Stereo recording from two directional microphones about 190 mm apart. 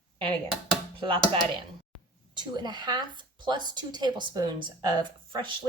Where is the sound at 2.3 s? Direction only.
25° right (ahead or behind).